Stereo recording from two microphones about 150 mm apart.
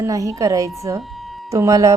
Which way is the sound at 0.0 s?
20° right (ahead or behind).